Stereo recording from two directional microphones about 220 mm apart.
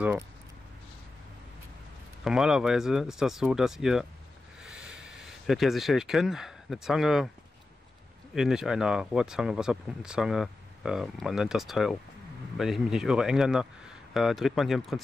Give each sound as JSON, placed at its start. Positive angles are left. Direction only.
{"t": 2.2, "sound": "speech", "side_deg": -5}
{"t": 8.4, "sound": "speech", "side_deg": -5}